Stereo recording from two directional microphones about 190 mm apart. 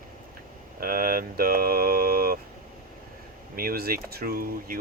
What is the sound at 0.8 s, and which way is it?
Speech, 50° right (ahead or behind).